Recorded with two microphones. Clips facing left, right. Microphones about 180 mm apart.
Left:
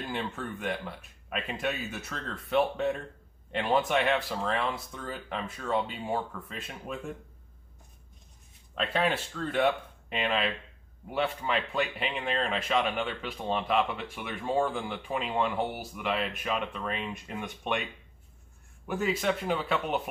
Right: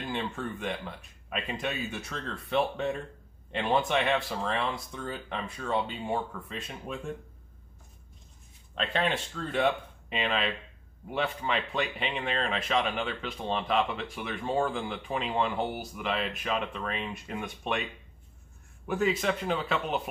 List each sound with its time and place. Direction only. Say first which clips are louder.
0.1 s speech: right 3 dB; centre (ahead or behind)
8.7 s speech: left 1 dB; 5° left (ahead or behind)
18.9 s speech: right 1 dB; centre (ahead or behind)